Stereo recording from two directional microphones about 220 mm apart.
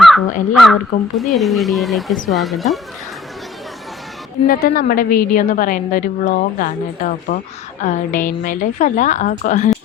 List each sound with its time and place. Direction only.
0.0 s crow: centre (ahead or behind)
0.6 s speech: centre (ahead or behind)
4.4 s a woman's voice: 40° left (ahead or behind)